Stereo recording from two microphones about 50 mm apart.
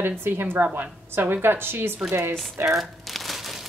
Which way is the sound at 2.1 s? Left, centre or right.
Right.